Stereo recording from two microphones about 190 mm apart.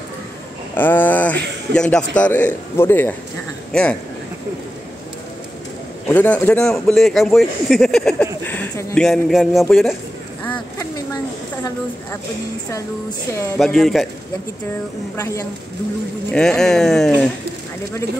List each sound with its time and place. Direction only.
0.7 s a man's voice: 10° left (ahead or behind)
6.0 s speech: 10° left (ahead or behind)
10.4 s a sound: 10° left (ahead or behind)
13.6 s speech: centre (ahead or behind)
15.1 s a man's voice: 15° left (ahead or behind)
16.3 s speech: 5° left (ahead or behind)